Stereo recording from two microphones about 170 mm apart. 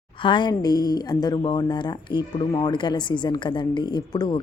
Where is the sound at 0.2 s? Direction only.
30° left (ahead or behind).